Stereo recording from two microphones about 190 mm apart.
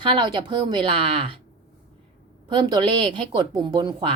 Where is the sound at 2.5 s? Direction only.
25° right (ahead or behind).